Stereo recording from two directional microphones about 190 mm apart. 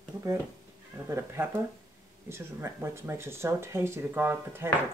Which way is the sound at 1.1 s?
15° right (ahead or behind).